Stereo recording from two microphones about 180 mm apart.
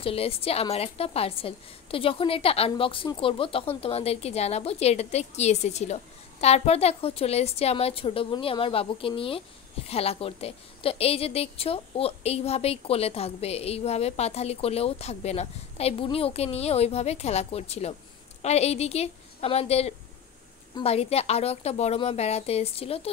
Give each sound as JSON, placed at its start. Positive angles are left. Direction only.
{"t": 0.0, "sound": "a woman's voice", "side_deg": 30}